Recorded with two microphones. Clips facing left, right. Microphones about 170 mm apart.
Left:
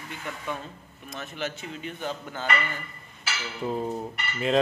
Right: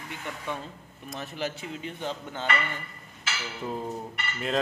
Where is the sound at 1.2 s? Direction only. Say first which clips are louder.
Even; 35° right (ahead or behind).